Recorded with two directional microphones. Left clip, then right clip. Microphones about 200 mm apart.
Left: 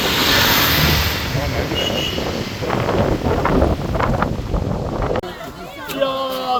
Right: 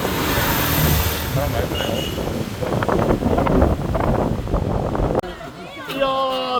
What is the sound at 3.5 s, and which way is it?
Wind noise, centre (ahead or behind).